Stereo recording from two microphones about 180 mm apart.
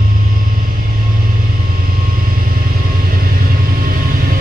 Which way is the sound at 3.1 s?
50° right (ahead or behind).